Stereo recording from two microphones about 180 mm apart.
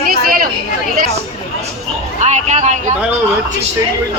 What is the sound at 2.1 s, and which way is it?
Speech, 40° right (ahead or behind).